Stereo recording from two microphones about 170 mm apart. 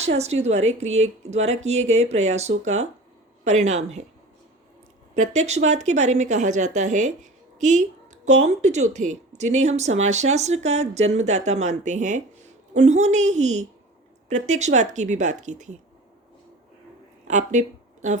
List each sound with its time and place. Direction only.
0.0 s speech: 40° right (ahead or behind)
5.1 s speech: 45° right (ahead or behind)
17.2 s a sound: 45° right (ahead or behind)